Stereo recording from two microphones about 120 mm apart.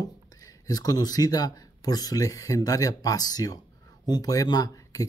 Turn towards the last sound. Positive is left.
turn(degrees=30)  # may be behind; listen again after turning